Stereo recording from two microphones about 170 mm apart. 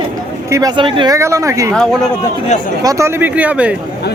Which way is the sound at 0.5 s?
25° right (ahead or behind).